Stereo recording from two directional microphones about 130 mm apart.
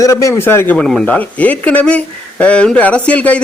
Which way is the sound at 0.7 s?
5° left (ahead or behind).